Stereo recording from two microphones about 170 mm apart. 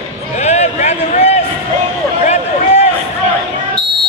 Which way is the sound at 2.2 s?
40° left (ahead or behind).